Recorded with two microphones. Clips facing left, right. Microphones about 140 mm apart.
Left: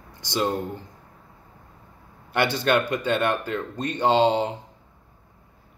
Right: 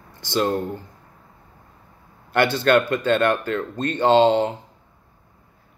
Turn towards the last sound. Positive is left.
turn(degrees=15)  # may be behind; listen again after turning